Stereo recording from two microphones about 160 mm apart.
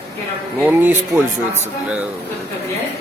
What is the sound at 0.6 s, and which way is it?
Speech, 10° right (ahead or behind).